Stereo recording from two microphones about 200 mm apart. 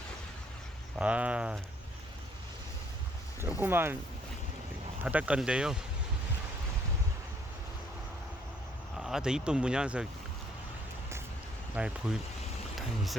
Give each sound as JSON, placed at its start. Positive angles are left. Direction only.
{"t": 0.9, "sound": "speech", "side_deg": -5}
{"t": 3.6, "sound": "speech", "side_deg": -10}
{"t": 5.0, "sound": "speech", "side_deg": -5}
{"t": 9.0, "sound": "speech", "side_deg": 0}
{"t": 11.7, "sound": "speech", "side_deg": -5}